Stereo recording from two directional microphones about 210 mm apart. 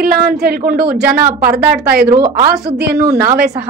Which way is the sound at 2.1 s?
20° right (ahead or behind).